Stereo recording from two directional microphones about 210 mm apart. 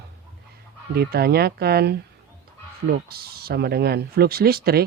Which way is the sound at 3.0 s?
45° right (ahead or behind).